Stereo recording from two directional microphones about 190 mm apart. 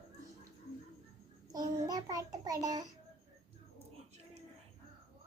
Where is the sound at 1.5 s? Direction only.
20° right (ahead or behind).